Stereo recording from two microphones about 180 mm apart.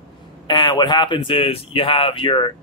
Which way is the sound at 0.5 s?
25° left (ahead or behind).